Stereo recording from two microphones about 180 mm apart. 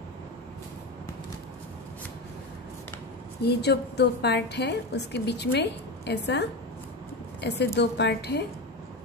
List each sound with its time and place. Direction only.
3.4 s a woman's voice: 65° left (ahead or behind)